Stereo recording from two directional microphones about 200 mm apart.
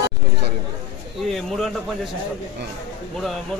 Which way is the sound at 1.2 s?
Centre (ahead or behind).